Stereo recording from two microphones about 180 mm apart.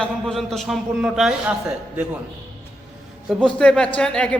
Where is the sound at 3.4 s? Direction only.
5° left (ahead or behind).